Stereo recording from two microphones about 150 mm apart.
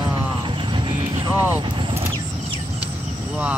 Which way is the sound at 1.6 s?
35° right (ahead or behind).